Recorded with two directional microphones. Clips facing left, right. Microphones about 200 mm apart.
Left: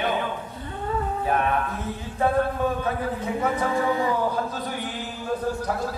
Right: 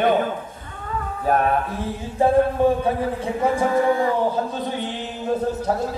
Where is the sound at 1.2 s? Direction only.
40° right (ahead or behind).